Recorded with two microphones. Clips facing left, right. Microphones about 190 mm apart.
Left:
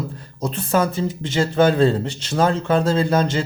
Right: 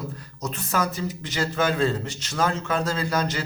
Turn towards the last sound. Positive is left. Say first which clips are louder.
# left 7 dB
turn(degrees=25)  # may be behind; listen again after turning